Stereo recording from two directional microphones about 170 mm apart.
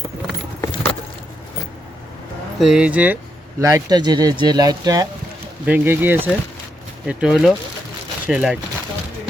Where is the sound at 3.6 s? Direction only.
20° right (ahead or behind).